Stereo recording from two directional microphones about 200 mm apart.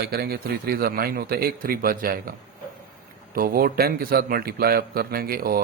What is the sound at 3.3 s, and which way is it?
Speech, 45° right (ahead or behind).